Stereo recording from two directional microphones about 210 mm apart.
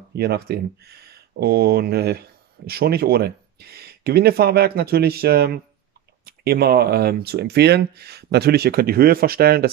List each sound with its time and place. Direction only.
0.1 s speech: 50° right (ahead or behind)